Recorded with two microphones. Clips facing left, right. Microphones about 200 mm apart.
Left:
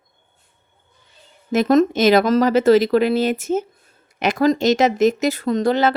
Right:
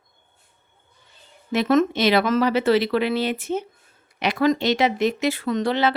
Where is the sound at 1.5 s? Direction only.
40° left (ahead or behind).